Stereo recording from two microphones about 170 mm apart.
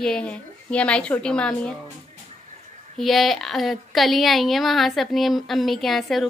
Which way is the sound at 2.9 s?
Centre (ahead or behind).